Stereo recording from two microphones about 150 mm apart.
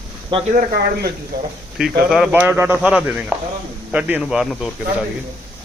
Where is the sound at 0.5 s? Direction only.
90° right.